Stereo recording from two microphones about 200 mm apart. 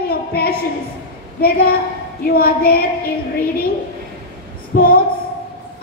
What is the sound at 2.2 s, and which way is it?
Speech, 50° left (ahead or behind).